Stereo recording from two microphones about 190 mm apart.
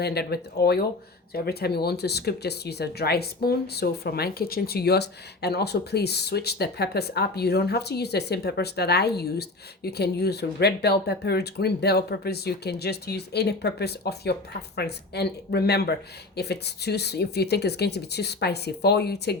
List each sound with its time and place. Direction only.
0.0 s speech: 55° left (ahead or behind)